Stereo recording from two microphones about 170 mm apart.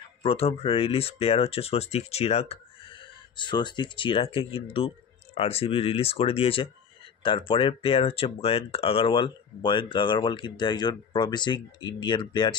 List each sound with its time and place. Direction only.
0.2 s speech: 35° left (ahead or behind)